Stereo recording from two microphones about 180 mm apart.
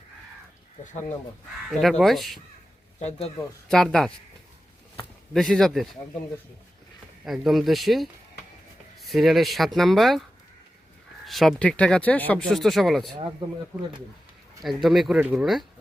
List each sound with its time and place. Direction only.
1.7 s speech: centre (ahead or behind)
3.0 s speech: 35° left (ahead or behind)
3.7 s speech: centre (ahead or behind)
5.3 s speech: centre (ahead or behind)
7.3 s speech: centre (ahead or behind)
11.3 s speech: centre (ahead or behind)
14.6 s speech: centre (ahead or behind)